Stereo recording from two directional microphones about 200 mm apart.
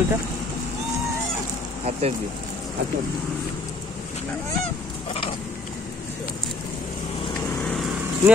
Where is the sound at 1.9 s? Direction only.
30° right (ahead or behind).